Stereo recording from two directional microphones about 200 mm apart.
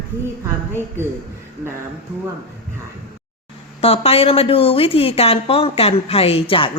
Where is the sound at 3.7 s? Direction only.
30° left (ahead or behind).